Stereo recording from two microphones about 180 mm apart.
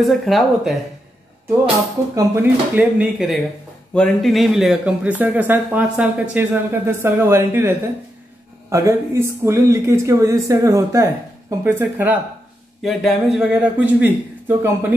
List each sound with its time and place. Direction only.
0.0 s speech: centre (ahead or behind)
2.1 s speech: 10° right (ahead or behind)